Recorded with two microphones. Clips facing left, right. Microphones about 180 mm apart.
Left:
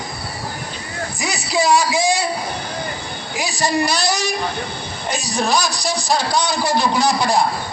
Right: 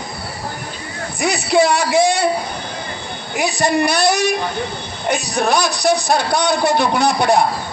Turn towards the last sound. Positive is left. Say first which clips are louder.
# right 2 dB
turn(degrees=-60)  # may be behind; listen again after turning